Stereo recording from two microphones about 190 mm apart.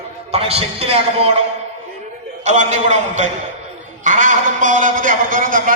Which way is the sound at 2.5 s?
40° right (ahead or behind).